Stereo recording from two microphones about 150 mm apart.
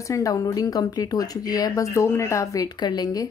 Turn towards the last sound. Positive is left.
turn(degrees=25)  # may be behind; listen again after turning